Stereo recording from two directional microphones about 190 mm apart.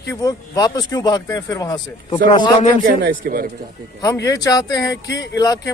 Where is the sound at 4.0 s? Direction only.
20° left (ahead or behind).